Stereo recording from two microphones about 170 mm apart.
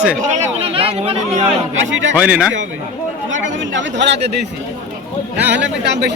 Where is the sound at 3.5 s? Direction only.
90° right.